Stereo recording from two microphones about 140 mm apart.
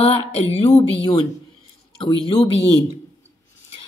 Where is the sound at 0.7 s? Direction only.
30° left (ahead or behind).